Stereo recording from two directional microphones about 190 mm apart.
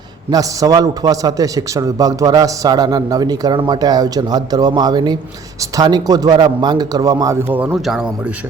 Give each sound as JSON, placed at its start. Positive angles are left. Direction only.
{"t": 0.3, "sound": "a man's voice", "side_deg": -20}